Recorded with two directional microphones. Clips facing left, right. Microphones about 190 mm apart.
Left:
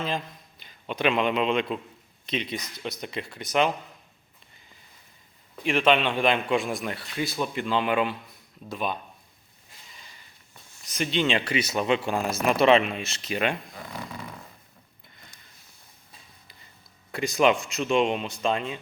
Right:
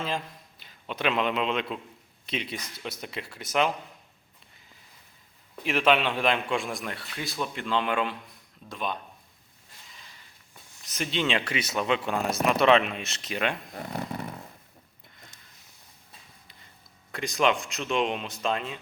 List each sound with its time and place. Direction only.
0.6 s a man's voice: centre (ahead or behind)
5.6 s a man's voice: 5° right (ahead or behind)
9.9 s a sound: centre (ahead or behind)
10.8 s a man's voice: centre (ahead or behind)
13.7 s speech: 60° right (ahead or behind)
17.1 s a man's voice: centre (ahead or behind)